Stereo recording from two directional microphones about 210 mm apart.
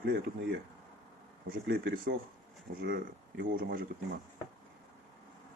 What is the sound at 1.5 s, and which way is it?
Speech, 45° right (ahead or behind).